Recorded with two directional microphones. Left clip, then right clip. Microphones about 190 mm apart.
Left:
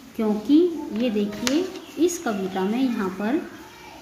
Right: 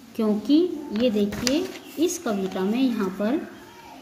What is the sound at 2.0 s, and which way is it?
A woman's voice, 20° right (ahead or behind).